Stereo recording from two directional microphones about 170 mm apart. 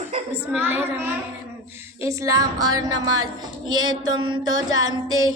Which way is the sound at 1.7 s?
15° right (ahead or behind).